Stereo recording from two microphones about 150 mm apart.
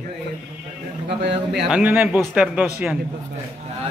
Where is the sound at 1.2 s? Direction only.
90° right.